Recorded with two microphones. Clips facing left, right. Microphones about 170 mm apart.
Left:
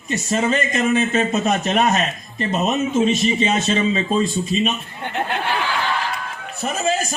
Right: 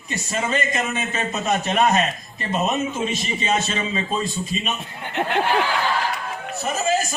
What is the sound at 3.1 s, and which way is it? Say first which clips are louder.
Speech: left 5 dB; 55° left (ahead or behind).